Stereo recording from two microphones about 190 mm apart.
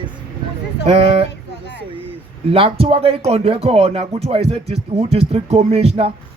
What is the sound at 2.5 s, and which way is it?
Speech, 30° right (ahead or behind).